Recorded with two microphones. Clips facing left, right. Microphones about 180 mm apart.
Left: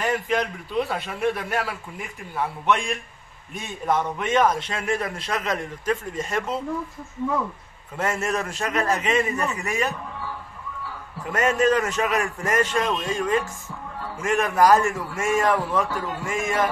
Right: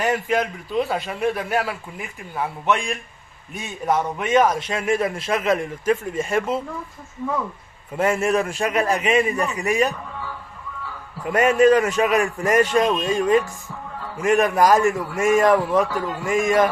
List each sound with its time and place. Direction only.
0.0 s a man's voice: 5° right (ahead or behind)
8.0 s a man's voice: 10° right (ahead or behind)
11.3 s a man's voice: 10° right (ahead or behind)